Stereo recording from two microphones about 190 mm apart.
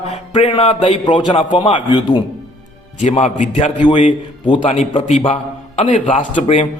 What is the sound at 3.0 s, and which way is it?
Speech, 40° left (ahead or behind).